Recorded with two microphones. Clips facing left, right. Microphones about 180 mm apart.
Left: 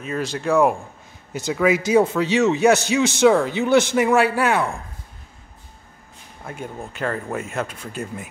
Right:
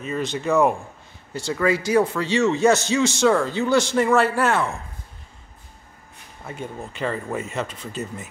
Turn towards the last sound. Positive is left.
turn(degrees=10)  # may be behind; listen again after turning